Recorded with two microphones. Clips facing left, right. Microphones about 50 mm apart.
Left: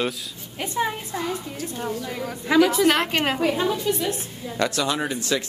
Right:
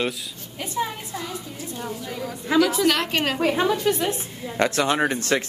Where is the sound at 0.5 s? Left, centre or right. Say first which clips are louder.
Left 2 dB; left.